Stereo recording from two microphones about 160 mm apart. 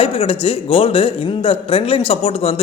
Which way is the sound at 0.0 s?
35° left (ahead or behind).